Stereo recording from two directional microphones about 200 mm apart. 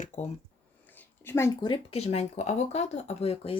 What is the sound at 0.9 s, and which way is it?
Speech, 10° left (ahead or behind).